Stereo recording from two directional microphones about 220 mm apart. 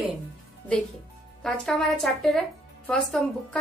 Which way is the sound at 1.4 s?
Centre (ahead or behind).